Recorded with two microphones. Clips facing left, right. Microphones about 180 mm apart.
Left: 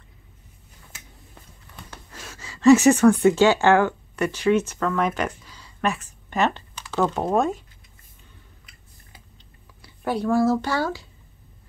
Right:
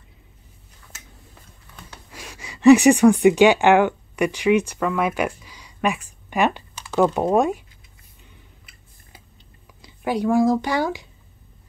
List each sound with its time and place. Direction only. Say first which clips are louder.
2.0 s speech: right 2 dB; 15° right (ahead or behind)
9.8 s speech: right 2 dB; 15° right (ahead or behind)